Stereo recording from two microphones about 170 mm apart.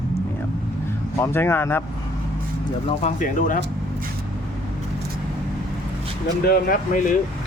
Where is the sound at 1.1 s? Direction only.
15° left (ahead or behind).